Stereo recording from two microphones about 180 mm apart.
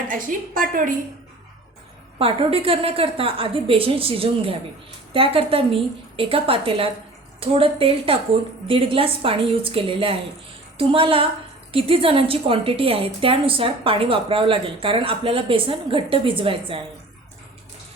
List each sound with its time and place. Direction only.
0.1 s a woman's voice: 50° right (ahead or behind)
2.1 s a woman's voice: 30° right (ahead or behind)